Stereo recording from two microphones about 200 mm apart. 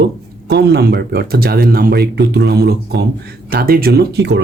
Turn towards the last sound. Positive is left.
turn(degrees=-60)  # may be behind; listen again after turning